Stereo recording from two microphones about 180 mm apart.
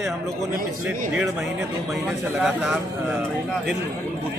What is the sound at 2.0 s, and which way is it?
Speech, centre (ahead or behind).